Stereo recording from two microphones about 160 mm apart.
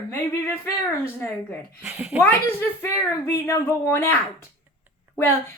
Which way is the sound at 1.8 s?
10° right (ahead or behind).